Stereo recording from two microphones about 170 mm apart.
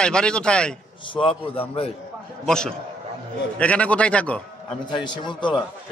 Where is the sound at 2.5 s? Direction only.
5° left (ahead or behind).